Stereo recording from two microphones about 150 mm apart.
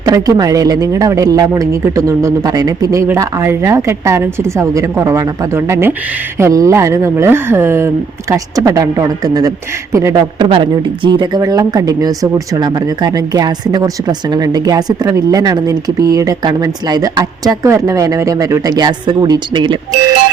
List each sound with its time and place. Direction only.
0.0 s speech: 25° right (ahead or behind)
10.3 s speech: 30° right (ahead or behind)